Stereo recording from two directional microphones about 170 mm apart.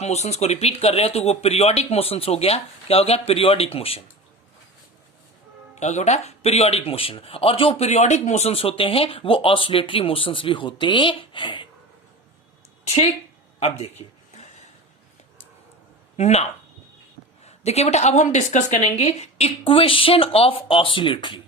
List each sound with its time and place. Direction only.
0.0 s speech: 40° left (ahead or behind)
5.7 s speech: 45° left (ahead or behind)
13.6 s speech: 35° left (ahead or behind)
16.1 s speech: 40° left (ahead or behind)